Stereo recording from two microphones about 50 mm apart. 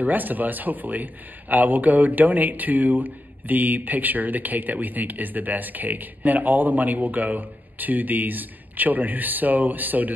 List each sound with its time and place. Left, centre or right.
0.0 s speech: right